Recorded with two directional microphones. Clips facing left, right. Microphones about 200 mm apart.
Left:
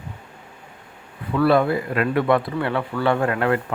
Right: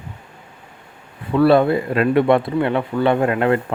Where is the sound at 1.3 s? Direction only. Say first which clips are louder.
Right 4 dB; 30° right (ahead or behind).